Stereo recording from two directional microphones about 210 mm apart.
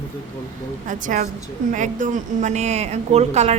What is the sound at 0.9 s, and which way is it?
A woman's voice, 40° right (ahead or behind).